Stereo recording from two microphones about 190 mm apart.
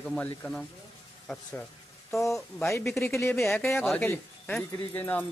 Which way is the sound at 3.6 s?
Centre (ahead or behind).